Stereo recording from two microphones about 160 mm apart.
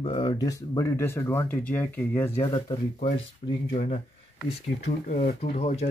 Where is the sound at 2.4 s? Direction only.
30° left (ahead or behind).